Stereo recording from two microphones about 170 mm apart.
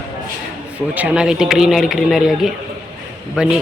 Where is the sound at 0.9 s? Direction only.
5° right (ahead or behind).